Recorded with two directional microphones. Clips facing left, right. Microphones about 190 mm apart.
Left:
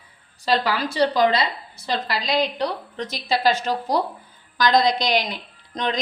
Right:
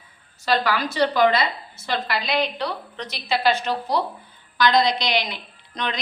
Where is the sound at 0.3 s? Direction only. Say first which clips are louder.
Even; 35° left (ahead or behind).